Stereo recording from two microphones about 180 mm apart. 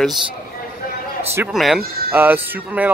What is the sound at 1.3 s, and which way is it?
Speech, 15° right (ahead or behind).